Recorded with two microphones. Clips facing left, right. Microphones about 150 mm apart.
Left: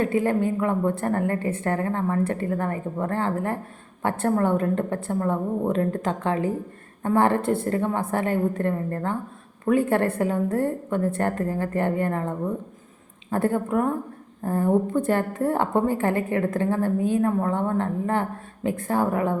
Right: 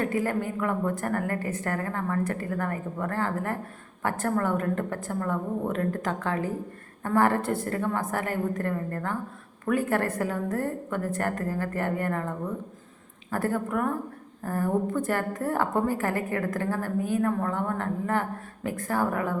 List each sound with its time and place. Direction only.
0.0 s a woman's voice: 25° left (ahead or behind)
13.3 s a woman's voice: 20° left (ahead or behind)